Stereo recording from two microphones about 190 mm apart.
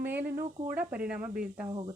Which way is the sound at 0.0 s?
10° right (ahead or behind).